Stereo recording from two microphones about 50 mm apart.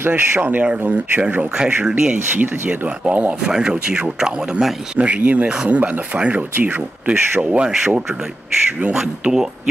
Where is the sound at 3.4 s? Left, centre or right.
Centre.